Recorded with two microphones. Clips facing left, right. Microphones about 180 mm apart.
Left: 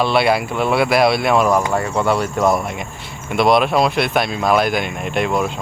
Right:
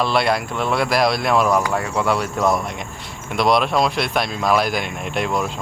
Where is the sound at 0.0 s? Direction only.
5° left (ahead or behind).